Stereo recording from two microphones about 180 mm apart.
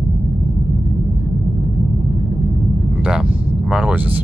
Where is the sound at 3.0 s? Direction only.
5° right (ahead or behind).